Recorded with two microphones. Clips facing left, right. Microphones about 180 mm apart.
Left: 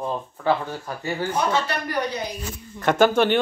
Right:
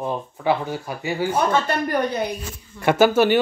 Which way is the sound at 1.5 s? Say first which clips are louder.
Right 4 dB; 50° right (ahead or behind).